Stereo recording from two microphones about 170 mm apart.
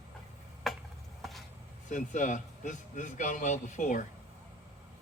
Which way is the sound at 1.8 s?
50° left (ahead or behind).